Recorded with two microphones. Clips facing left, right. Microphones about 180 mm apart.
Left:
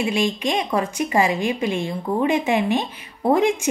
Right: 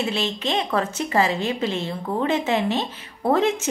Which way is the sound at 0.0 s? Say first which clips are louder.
Left 4 dB; 15° left (ahead or behind).